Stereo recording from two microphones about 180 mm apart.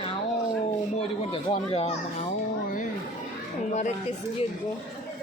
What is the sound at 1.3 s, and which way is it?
Speech, 30° left (ahead or behind).